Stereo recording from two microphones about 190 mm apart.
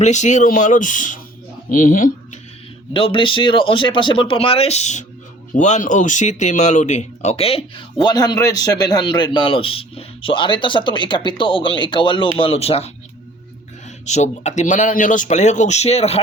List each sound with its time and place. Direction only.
0.0 s speech: 40° left (ahead or behind)
2.9 s a man's voice: 25° left (ahead or behind)
14.0 s speech: 40° left (ahead or behind)